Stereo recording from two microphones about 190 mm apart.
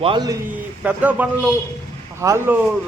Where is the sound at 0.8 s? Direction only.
10° right (ahead or behind).